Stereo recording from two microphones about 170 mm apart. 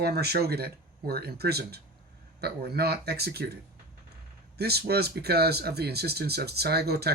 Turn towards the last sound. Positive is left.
turn(degrees=-70)  # may be behind; listen again after turning